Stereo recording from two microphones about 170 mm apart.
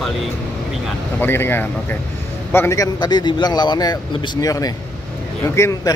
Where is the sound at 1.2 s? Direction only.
10° left (ahead or behind).